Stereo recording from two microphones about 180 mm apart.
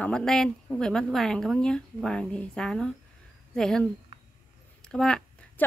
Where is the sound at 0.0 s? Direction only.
5° left (ahead or behind).